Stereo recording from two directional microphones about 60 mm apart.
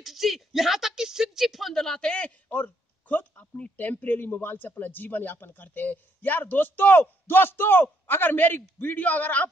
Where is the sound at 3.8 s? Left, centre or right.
Left.